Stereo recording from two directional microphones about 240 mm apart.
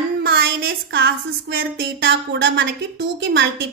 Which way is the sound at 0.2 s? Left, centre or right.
Right.